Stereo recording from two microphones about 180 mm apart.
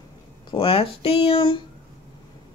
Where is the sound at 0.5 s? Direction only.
30° left (ahead or behind).